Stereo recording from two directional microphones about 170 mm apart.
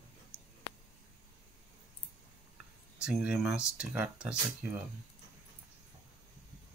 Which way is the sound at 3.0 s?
5° right (ahead or behind).